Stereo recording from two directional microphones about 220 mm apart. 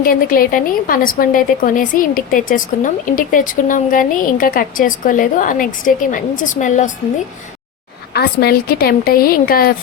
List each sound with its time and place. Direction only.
0.0 s a woman's voice: 40° left (ahead or behind)
8.1 s a woman's voice: 45° left (ahead or behind)